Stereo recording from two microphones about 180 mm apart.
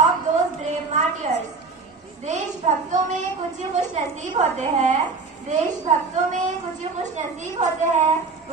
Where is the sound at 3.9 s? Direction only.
40° right (ahead or behind).